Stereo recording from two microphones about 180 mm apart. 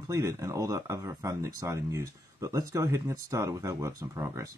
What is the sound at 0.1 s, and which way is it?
Speech, 20° right (ahead or behind).